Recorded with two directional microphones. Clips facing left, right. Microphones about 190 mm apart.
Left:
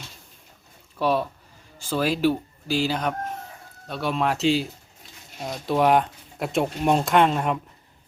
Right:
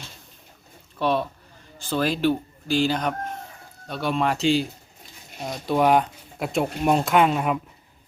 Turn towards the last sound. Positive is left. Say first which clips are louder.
# even
turn(degrees=-5)  # may be behind; listen again after turning